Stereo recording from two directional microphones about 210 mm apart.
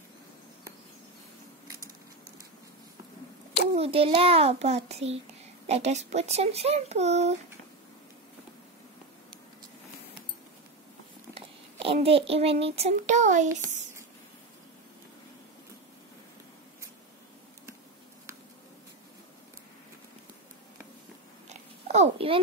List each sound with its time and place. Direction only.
3.7 s a child's voice: 30° right (ahead or behind)
11.3 s a child's voice: 25° right (ahead or behind)
21.5 s a sound: 30° right (ahead or behind)